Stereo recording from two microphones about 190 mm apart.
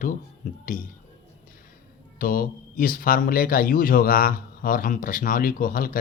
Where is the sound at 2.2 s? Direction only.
50° left (ahead or behind).